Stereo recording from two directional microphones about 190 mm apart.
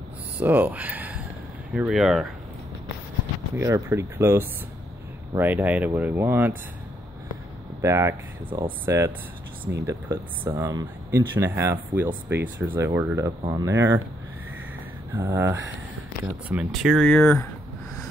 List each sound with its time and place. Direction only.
0.4 s speech: 10° right (ahead or behind)
3.5 s speech: 15° right (ahead or behind)
7.8 s speech: 15° right (ahead or behind)
15.1 s speech: 10° right (ahead or behind); by 17.5 s 10° left (ahead or behind)